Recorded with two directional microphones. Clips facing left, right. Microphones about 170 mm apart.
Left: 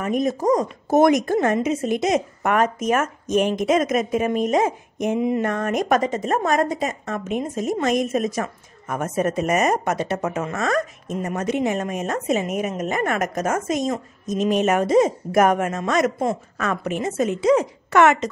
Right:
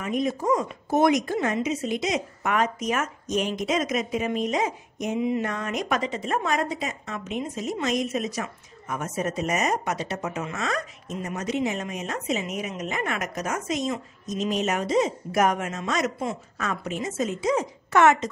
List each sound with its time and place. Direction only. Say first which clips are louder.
0.0 s speech: left 5 dB; 45° left (ahead or behind); by 18.3 s 70° left (ahead or behind)